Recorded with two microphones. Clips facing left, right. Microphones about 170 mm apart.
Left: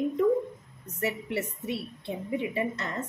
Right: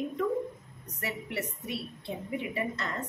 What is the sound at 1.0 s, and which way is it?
A woman's voice, 25° left (ahead or behind).